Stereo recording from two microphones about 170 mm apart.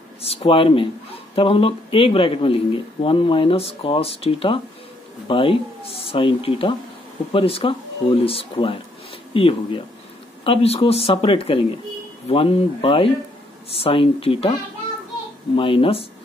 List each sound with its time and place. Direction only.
0.2 s speech: 35° left (ahead or behind)